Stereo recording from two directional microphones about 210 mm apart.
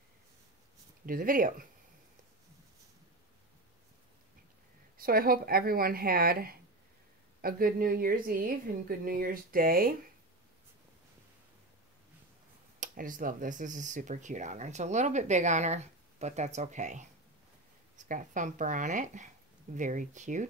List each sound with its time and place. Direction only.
1.0 s speech: 40° right (ahead or behind)
4.9 s a woman's voice: 45° right (ahead or behind)
12.8 s speech: 40° right (ahead or behind)